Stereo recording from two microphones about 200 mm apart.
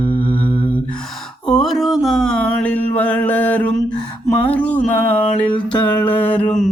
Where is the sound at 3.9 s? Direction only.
20° left (ahead or behind).